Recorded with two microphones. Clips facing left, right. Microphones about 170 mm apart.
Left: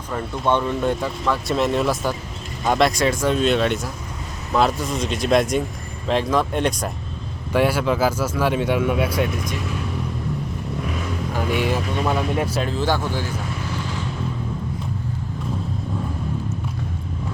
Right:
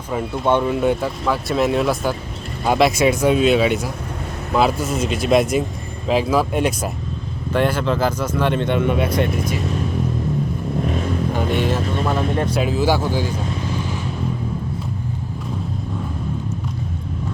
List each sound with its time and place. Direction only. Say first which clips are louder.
0.1 s speech: right 3 dB; 10° right (ahead or behind)
7.5 s speech: even; 10° left (ahead or behind)
10.8 s vehicle: right 6 dB; 40° right (ahead or behind)
11.3 s vehicle: even; 10° left (ahead or behind)
12.0 s speech: right 1 dB; 5° left (ahead or behind)
12.6 s speech: right 4 dB; 10° right (ahead or behind)
13.7 s vehicle: right 3 dB; 15° right (ahead or behind)